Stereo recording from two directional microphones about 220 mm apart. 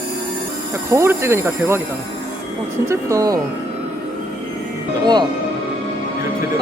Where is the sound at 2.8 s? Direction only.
15° right (ahead or behind).